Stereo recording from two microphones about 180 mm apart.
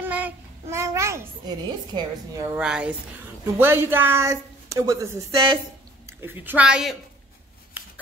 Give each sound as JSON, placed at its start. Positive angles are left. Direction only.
{"t": 0.0, "sound": "child singing", "side_deg": -10}
{"t": 2.4, "sound": "a woman's voice", "side_deg": -5}